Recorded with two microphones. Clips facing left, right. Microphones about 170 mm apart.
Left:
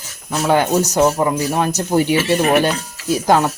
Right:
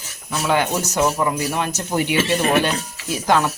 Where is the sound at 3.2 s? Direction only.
40° left (ahead or behind).